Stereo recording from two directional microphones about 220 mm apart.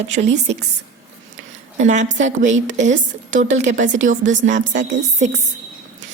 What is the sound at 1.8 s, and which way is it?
A woman's voice, 35° right (ahead or behind).